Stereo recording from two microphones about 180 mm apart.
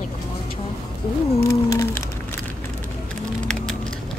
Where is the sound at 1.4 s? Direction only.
15° left (ahead or behind).